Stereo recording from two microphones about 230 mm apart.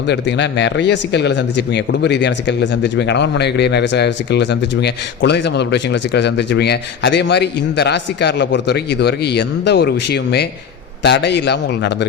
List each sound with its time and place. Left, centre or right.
0.1 s speech: left